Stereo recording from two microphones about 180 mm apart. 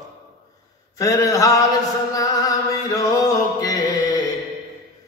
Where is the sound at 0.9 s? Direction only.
20° left (ahead or behind).